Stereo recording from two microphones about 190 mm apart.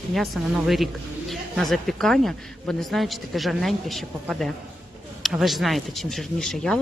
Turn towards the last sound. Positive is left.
turn(degrees=0)  # may be behind; listen again after turning